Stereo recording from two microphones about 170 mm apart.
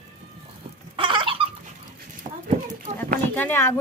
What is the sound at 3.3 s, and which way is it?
Speech, 10° left (ahead or behind).